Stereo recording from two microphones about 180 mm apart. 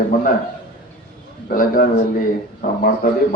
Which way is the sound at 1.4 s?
50° left (ahead or behind).